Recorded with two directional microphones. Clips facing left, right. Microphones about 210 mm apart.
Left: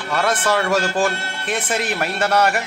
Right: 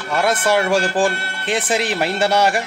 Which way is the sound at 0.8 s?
30° right (ahead or behind).